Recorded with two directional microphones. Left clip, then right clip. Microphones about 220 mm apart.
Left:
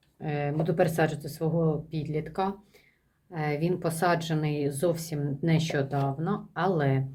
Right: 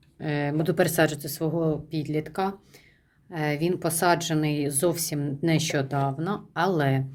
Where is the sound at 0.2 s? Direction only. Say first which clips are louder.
Right 3 dB; 40° right (ahead or behind).